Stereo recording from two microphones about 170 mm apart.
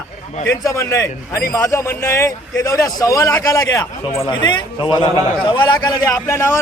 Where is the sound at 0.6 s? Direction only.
15° left (ahead or behind).